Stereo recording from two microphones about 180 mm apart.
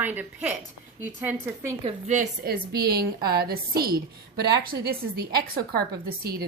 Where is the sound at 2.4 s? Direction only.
60° right (ahead or behind).